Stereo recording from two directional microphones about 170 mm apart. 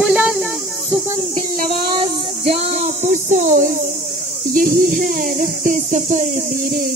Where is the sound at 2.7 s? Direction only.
45° right (ahead or behind).